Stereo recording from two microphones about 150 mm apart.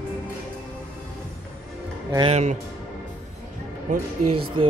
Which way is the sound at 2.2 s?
50° right (ahead or behind).